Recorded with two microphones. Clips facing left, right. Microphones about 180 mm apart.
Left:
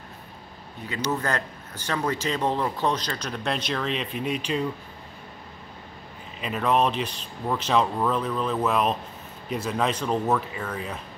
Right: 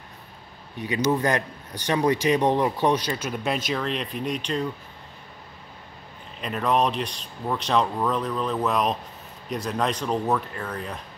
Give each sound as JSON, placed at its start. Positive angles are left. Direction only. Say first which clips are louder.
{"t": 0.7, "sound": "speech", "louder": "right 5 dB", "side_deg": -15}
{"t": 6.4, "sound": "speech", "louder": "even", "side_deg": 0}